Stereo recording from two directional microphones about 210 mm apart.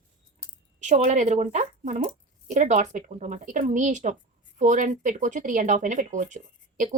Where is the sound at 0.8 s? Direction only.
35° right (ahead or behind).